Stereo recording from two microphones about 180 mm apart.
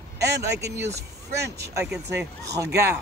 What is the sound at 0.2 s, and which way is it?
Speech, 65° right (ahead or behind).